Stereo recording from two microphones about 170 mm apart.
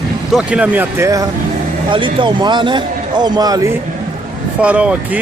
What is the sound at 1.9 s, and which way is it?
A man's voice, 30° right (ahead or behind).